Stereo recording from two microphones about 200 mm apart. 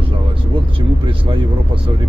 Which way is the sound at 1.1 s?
25° right (ahead or behind).